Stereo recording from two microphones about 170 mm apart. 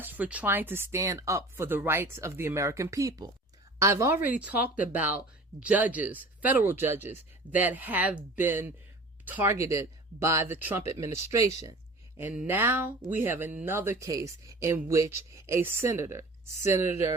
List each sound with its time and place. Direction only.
0.0 s speech: 10° right (ahead or behind)